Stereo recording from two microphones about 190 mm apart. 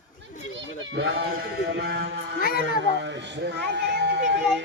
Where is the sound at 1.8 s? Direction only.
60° right (ahead or behind).